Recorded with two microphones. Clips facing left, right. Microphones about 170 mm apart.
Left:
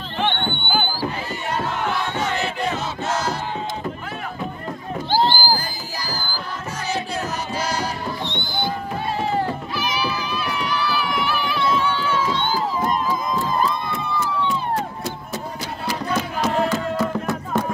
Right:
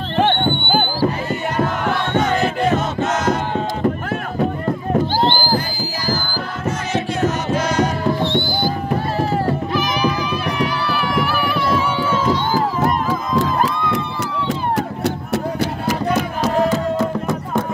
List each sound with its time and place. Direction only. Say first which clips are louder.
0.2 s a sound: right 6 dB; 45° right (ahead or behind)
1.6 s music: right 4 dB; 50° right (ahead or behind)
5.2 s music: right 3 dB; 25° right (ahead or behind)
6.9 s music: right 5 dB; 35° left (ahead or behind)
8.3 s music: right 7 dB; 20° left (ahead or behind)
10.0 s run: right 6 dB; 40° right (ahead or behind)
11.1 s run: right 4 dB; centre (ahead or behind)
13.4 s a sound: right 4 dB; 90° right; by 16.2 s 65° right (ahead or behind)